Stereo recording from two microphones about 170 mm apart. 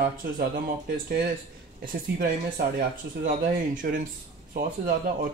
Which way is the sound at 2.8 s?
50° right (ahead or behind).